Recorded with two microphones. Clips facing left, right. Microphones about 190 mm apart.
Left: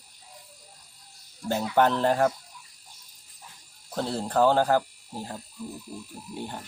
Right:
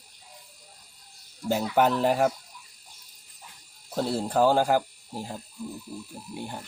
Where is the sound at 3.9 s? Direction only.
10° right (ahead or behind).